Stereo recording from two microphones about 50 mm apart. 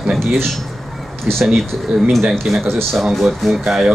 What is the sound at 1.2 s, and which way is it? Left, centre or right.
Speech, centre.